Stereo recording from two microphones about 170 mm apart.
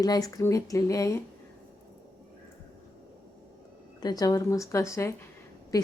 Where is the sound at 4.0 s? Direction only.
20° left (ahead or behind).